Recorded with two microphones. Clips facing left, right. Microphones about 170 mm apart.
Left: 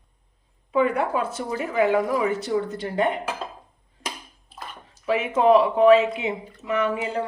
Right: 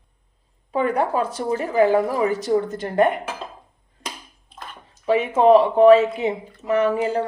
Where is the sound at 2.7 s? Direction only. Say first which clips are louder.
Right 5 dB; 50° right (ahead or behind).